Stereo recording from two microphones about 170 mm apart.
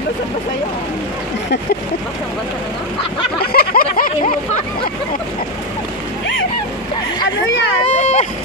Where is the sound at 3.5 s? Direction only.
60° left (ahead or behind).